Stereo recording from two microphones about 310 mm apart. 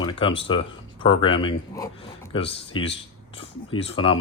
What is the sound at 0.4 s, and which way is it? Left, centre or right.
Speech, centre.